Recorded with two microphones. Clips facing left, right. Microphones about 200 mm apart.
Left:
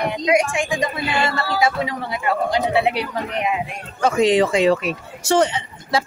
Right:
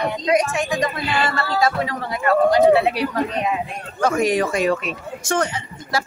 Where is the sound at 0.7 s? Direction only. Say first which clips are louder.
Even; 10° left (ahead or behind); by 4.8 s 25° left (ahead or behind).